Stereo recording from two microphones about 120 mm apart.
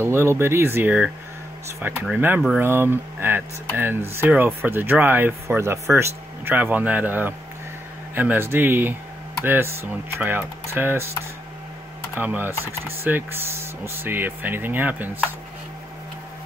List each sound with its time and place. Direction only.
0.0 s speech: 20° right (ahead or behind)
2.1 s speech: 15° right (ahead or behind)
12.2 s speech: 15° right (ahead or behind)